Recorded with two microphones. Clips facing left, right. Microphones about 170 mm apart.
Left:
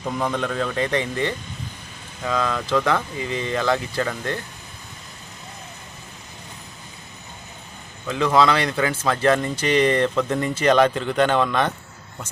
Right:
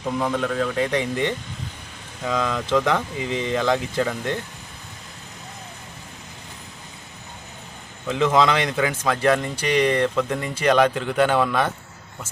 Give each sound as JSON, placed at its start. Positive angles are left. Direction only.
{"t": 0.2, "sound": "speech", "side_deg": -5}
{"t": 8.1, "sound": "speech", "side_deg": -20}